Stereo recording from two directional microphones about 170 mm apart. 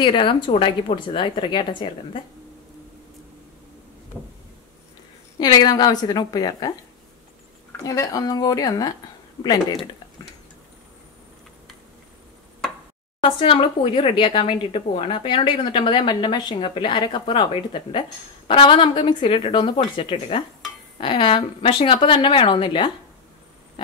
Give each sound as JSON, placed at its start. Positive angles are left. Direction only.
{"t": 0.0, "sound": "speech", "side_deg": 30}
{"t": 5.4, "sound": "speech", "side_deg": 25}
{"t": 7.8, "sound": "speech", "side_deg": 20}
{"t": 13.2, "sound": "speech", "side_deg": 30}